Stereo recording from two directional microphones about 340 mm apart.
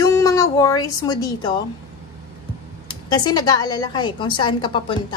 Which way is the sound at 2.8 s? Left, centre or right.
Centre.